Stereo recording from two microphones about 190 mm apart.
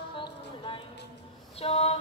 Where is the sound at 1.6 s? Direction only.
35° left (ahead or behind).